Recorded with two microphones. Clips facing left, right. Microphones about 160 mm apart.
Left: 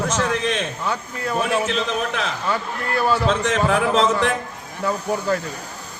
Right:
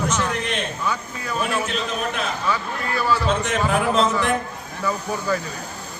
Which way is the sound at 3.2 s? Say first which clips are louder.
Left 2 dB; 90° left.